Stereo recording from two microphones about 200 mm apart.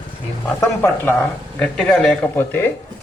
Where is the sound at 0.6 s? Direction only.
10° left (ahead or behind).